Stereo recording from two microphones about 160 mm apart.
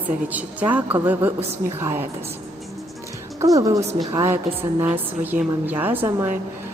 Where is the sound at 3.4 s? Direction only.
20° right (ahead or behind).